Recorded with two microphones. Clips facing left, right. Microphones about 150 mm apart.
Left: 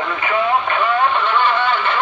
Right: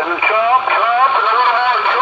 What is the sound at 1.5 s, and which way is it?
Vehicle, 65° right (ahead or behind).